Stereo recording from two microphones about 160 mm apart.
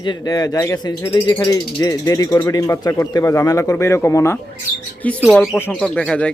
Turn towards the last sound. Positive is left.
turn(degrees=5)  # may be behind; listen again after turning